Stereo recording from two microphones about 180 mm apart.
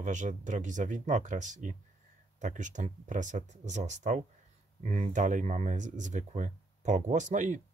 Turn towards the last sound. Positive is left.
turn(degrees=-45)  # may be behind; listen again after turning